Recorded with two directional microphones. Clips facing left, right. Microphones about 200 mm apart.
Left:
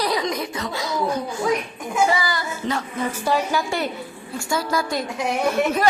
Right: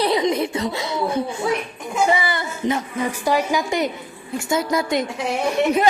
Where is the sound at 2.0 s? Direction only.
25° right (ahead or behind).